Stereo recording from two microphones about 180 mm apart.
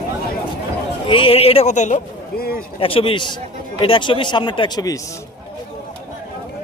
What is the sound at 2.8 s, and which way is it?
Speech, 30° left (ahead or behind).